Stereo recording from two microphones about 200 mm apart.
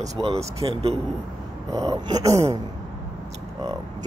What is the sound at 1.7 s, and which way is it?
Speech, 20° right (ahead or behind).